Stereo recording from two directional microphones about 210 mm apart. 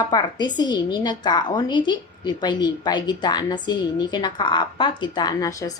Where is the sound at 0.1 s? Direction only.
20° left (ahead or behind).